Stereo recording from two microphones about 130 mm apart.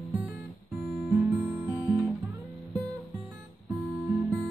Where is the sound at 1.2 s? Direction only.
25° right (ahead or behind).